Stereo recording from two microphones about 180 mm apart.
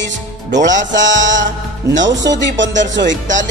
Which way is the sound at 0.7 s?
90° right.